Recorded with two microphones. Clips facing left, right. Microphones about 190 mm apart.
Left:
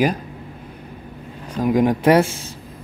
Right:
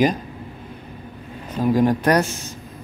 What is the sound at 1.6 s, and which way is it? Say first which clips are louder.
Speech: even; 20° left (ahead or behind).